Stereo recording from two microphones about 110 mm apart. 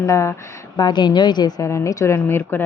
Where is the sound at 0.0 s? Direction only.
25° left (ahead or behind).